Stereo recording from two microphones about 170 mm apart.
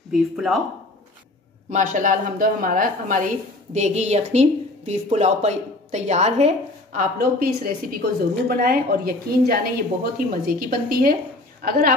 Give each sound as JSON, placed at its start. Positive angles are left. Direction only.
{"t": 0.1, "sound": "speech", "side_deg": 0}
{"t": 1.7, "sound": "a woman's voice", "side_deg": -50}